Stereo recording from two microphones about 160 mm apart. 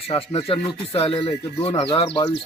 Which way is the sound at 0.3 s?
35° left (ahead or behind).